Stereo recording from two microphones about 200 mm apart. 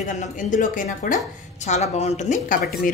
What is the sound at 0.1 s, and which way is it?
A woman's voice, 40° left (ahead or behind).